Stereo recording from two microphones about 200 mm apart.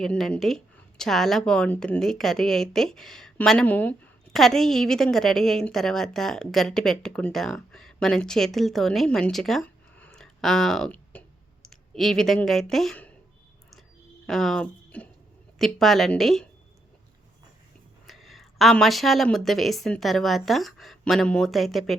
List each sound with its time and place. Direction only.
0.0 s a woman's voice: centre (ahead or behind)
14.3 s a woman's voice: centre (ahead or behind)
18.0 s a woman's voice: centre (ahead or behind)